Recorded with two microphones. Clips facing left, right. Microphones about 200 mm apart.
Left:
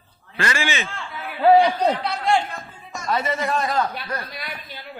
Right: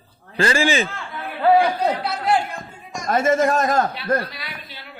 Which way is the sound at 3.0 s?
45° right (ahead or behind).